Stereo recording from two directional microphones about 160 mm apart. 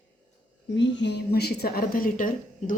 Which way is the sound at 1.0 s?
90° left.